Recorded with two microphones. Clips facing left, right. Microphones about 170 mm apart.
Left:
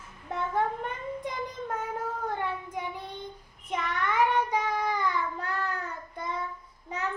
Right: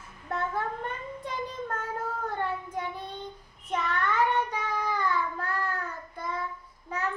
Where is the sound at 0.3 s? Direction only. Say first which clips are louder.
Left 2 dB; 15° left (ahead or behind).